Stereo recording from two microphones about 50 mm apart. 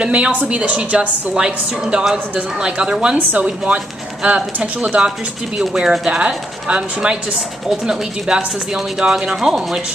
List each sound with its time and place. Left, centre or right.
0.0 s a woman's voice: right
0.3 s speech: right
0.6 s speech: right
3.2 s speech: right
3.4 s speech: right